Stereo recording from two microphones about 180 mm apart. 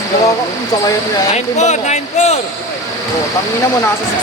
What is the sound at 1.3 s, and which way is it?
Speech, 40° left (ahead or behind).